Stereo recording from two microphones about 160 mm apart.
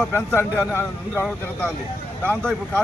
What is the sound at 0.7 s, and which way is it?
Speech, 15° left (ahead or behind).